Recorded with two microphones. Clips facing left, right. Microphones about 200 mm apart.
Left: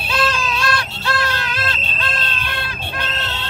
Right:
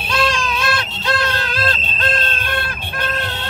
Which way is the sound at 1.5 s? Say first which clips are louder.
Right 4 dB; 45° right (ahead or behind).